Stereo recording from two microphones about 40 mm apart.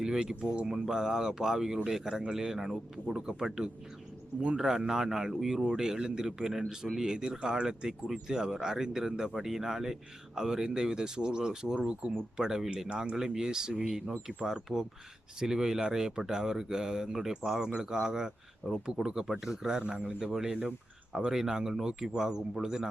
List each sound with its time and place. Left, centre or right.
0.0 s a man's voice: centre
19.8 s a man's voice: right